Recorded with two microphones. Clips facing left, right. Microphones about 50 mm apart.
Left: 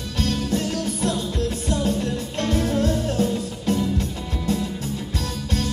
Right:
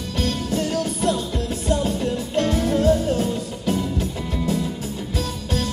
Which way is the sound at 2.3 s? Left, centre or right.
Right.